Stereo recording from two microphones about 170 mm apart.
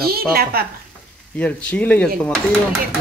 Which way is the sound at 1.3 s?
5° left (ahead or behind).